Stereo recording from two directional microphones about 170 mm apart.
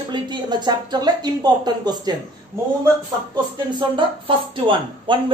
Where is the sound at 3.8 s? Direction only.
30° right (ahead or behind).